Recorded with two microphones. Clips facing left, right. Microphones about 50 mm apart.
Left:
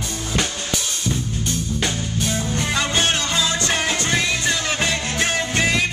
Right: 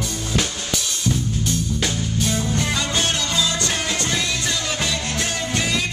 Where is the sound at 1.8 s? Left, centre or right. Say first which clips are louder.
Left 1 dB; centre.